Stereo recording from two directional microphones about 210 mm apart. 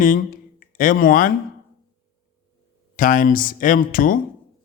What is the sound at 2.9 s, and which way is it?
A man's voice, 40° left (ahead or behind).